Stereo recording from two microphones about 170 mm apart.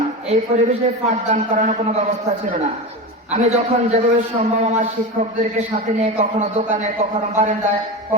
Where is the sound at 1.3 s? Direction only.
50° right (ahead or behind).